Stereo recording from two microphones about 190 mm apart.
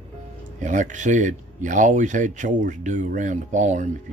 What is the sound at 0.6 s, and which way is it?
Speech, 40° right (ahead or behind).